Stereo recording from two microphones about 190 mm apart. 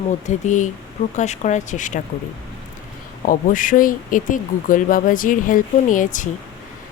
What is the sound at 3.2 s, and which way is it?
Speech, 45° left (ahead or behind).